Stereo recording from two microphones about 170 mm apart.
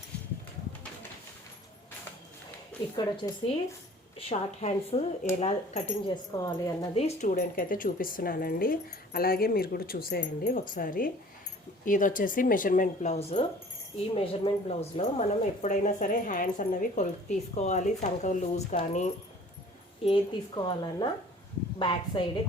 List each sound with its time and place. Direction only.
3.0 s a woman's voice: 30° left (ahead or behind)
6.3 s a woman's voice: 20° left (ahead or behind)
6.9 s a woman's voice: 40° left (ahead or behind)
7.3 s speech: 55° left (ahead or behind); by 19.1 s 40° left (ahead or behind)
20.1 s a woman's voice: 30° left (ahead or behind)